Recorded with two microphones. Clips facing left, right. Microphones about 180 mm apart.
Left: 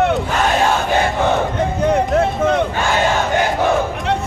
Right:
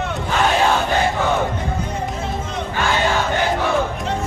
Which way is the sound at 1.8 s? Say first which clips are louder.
Left 11 dB; 65° left (ahead or behind).